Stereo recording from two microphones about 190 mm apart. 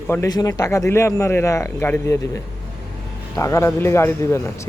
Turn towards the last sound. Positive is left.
turn(degrees=15)  # may be behind; listen again after turning